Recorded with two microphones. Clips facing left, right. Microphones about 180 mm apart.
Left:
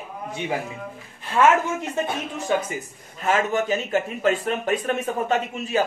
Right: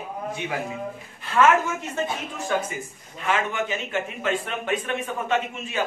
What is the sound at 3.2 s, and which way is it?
A man's voice, 40° left (ahead or behind).